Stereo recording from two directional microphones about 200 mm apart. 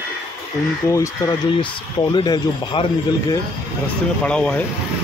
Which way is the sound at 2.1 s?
20° left (ahead or behind).